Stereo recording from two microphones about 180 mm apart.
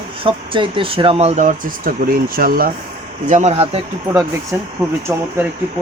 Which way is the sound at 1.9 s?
50° right (ahead or behind).